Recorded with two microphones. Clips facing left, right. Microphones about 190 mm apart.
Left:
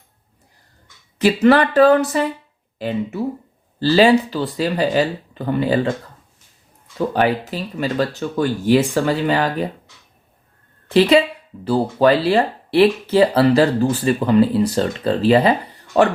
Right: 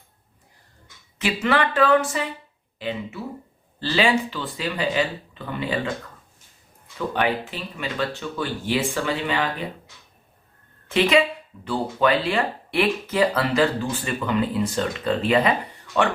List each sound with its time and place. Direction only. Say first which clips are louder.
1.2 s speech: left 9 dB; 40° left (ahead or behind)
7.1 s speech: left 5 dB; 40° left (ahead or behind)
10.8 s speech: left 6 dB; 35° left (ahead or behind)